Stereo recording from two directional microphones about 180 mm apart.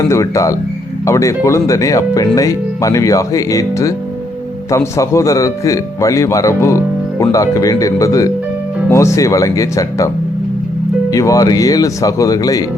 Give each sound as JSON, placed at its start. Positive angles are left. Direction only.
{"t": 0.0, "sound": "speech", "side_deg": 15}
{"t": 11.1, "sound": "speech", "side_deg": 20}